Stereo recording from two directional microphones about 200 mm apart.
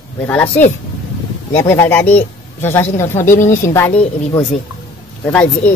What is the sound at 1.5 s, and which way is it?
Speech, 15° left (ahead or behind).